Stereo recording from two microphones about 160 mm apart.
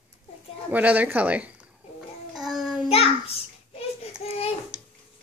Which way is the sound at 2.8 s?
40° left (ahead or behind).